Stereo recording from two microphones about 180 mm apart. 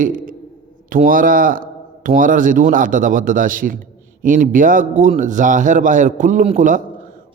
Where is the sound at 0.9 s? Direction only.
50° right (ahead or behind).